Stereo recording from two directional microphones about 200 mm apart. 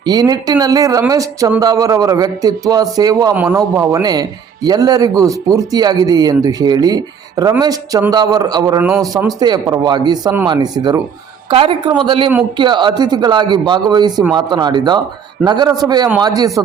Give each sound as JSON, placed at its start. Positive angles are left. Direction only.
{"t": 0.0, "sound": "speech", "side_deg": -20}